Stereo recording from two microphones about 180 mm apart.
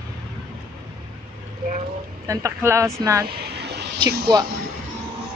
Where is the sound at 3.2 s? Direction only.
65° right (ahead or behind).